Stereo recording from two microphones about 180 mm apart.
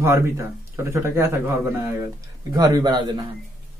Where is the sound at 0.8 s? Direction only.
15° right (ahead or behind).